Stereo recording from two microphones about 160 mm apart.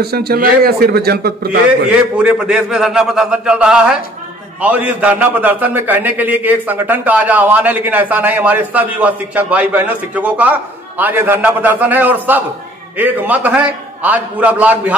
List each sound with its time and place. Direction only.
0.0 s a man's voice: 80° right
1.9 s a man's voice: 5° right (ahead or behind)